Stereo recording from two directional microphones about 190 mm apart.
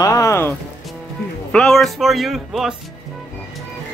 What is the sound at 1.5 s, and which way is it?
Speech, 5° left (ahead or behind).